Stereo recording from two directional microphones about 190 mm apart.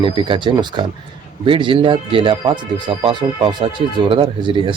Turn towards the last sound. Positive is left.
turn(degrees=-25)  # may be behind; listen again after turning